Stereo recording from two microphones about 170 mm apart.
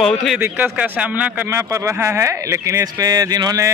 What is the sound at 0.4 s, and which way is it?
Speech, 10° right (ahead or behind).